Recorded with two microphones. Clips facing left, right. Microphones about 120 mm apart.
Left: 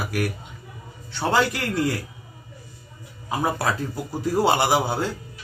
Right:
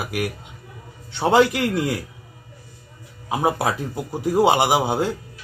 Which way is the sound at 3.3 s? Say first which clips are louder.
Right 3 dB; 15° right (ahead or behind).